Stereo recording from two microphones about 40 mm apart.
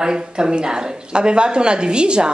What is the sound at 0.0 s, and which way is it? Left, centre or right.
A woman's voice, centre.